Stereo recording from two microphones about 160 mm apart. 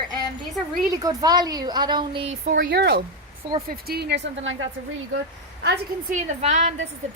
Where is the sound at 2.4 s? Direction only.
55° right (ahead or behind).